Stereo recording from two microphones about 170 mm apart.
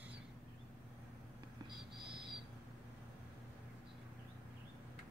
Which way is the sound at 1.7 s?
Centre (ahead or behind).